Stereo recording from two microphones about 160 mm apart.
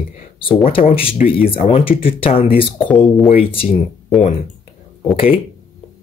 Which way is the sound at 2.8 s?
10° left (ahead or behind).